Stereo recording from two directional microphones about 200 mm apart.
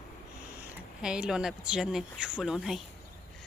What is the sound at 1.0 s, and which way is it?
Speech, 5° right (ahead or behind).